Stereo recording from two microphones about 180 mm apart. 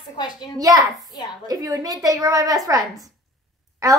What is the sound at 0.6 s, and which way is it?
A woman's voice, 20° right (ahead or behind).